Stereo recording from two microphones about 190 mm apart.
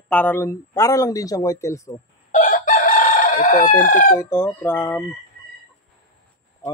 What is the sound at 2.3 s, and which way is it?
Chicken, 45° left (ahead or behind).